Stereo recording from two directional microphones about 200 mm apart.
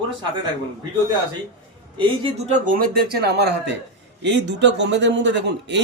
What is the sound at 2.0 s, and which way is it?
A man's voice, 30° right (ahead or behind).